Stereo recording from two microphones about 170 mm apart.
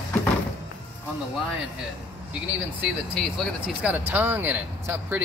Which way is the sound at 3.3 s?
5° right (ahead or behind).